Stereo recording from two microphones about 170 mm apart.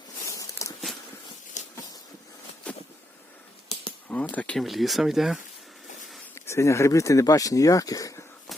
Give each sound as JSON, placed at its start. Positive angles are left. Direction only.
{"t": 0.3, "sound": "walk", "side_deg": 20}
{"t": 1.6, "sound": "a sound", "side_deg": 45}
{"t": 4.4, "sound": "speech", "side_deg": 5}
{"t": 6.3, "sound": "speech", "side_deg": 15}